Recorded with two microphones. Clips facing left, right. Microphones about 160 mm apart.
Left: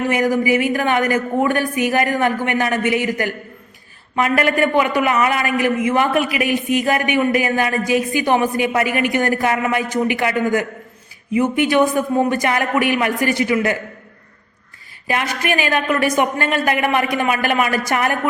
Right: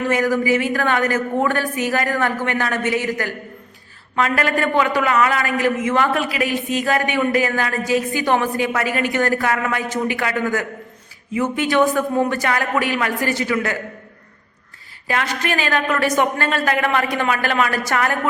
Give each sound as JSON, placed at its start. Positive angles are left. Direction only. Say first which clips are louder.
{"t": 0.1, "sound": "a man's voice", "louder": "even", "side_deg": 15}
{"t": 15.0, "sound": "a man's voice", "louder": "left 1 dB", "side_deg": 15}